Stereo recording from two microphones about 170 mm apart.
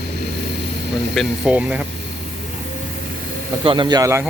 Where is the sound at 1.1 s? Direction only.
5° right (ahead or behind).